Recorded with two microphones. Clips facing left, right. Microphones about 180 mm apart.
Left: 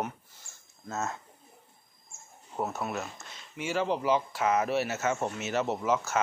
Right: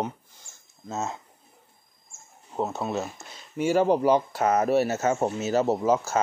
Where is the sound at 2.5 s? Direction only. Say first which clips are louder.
Right 5 dB; 25° right (ahead or behind).